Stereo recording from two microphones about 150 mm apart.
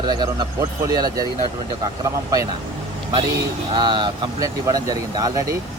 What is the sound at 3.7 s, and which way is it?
Speech, 30° right (ahead or behind).